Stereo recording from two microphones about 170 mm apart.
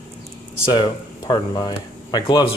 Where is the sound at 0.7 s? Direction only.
25° left (ahead or behind).